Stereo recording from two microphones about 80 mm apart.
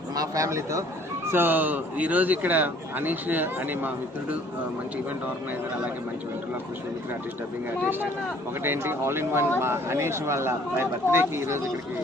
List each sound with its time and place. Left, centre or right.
0.2 s speech: right
1.3 s speech: right
8.6 s speech: right